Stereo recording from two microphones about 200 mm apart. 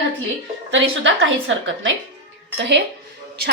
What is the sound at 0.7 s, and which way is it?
A woman's voice, 70° right (ahead or behind).